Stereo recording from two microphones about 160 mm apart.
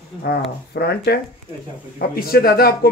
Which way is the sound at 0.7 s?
90° left.